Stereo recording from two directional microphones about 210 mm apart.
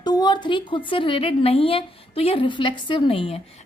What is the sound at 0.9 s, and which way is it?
A woman's voice, 25° left (ahead or behind).